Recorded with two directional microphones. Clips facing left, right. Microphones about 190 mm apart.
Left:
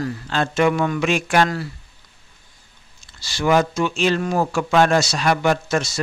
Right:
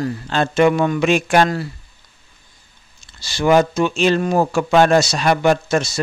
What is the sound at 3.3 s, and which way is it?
Speech, 25° right (ahead or behind).